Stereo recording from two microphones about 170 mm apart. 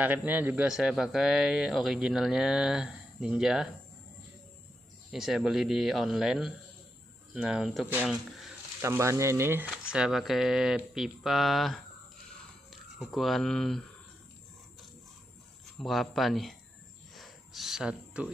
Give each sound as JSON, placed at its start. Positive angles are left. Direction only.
{"t": 0.0, "sound": "speech", "side_deg": -10}
{"t": 5.1, "sound": "speech", "side_deg": 0}
{"t": 8.8, "sound": "speech", "side_deg": -15}
{"t": 13.0, "sound": "speech", "side_deg": 0}
{"t": 15.8, "sound": "speech", "side_deg": 0}
{"t": 17.1, "sound": "a sound", "side_deg": 0}